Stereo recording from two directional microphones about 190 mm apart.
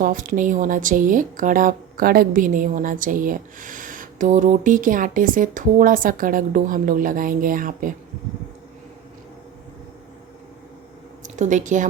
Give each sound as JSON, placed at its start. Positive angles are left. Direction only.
{"t": 0.0, "sound": "a woman's voice", "side_deg": -45}
{"t": 11.2, "sound": "speech", "side_deg": -40}